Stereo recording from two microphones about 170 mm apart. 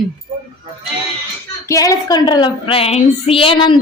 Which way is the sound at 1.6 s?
20° left (ahead or behind).